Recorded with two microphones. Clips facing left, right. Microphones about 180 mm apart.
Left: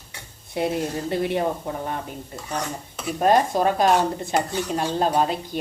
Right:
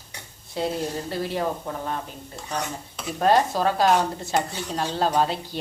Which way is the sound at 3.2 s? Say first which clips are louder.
Left 1 dB; 15° left (ahead or behind).